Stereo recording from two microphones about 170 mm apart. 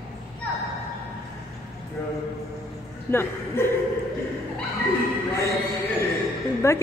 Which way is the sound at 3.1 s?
15° left (ahead or behind).